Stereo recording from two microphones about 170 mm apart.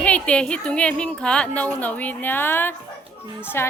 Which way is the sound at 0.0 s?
5° left (ahead or behind).